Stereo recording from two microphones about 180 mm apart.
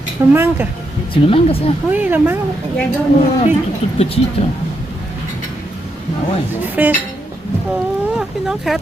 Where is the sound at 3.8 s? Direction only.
30° left (ahead or behind).